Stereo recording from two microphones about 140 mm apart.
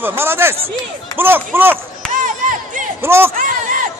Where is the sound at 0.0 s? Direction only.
15° right (ahead or behind).